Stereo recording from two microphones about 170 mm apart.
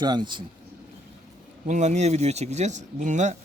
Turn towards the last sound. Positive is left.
turn(degrees=-45)  # may be behind; listen again after turning